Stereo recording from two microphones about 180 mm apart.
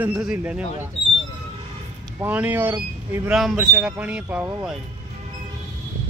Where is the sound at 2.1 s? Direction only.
10° right (ahead or behind).